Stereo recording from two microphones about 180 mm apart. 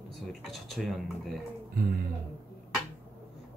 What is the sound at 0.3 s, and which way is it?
Speech, centre (ahead or behind).